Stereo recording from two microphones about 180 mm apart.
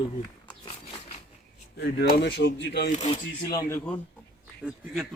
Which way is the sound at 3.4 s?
20° left (ahead or behind).